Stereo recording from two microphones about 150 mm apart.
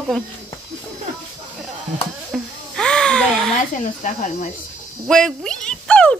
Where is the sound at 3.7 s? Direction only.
55° left (ahead or behind).